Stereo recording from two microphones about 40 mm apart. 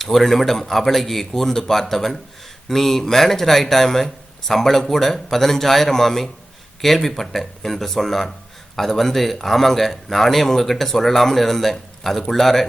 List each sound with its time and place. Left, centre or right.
0.0 s speech: centre